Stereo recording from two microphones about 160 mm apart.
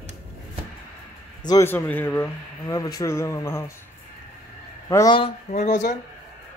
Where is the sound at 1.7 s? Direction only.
10° left (ahead or behind).